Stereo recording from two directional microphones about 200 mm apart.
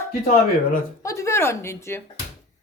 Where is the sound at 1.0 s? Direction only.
15° left (ahead or behind).